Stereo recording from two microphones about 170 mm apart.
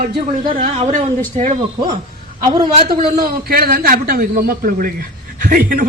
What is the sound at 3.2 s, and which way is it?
A man's voice, 60° right (ahead or behind).